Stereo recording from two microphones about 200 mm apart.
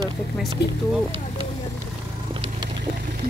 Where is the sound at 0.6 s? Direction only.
55° left (ahead or behind).